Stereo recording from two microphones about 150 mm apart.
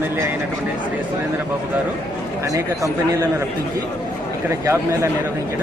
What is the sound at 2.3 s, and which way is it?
A man's voice, 20° right (ahead or behind).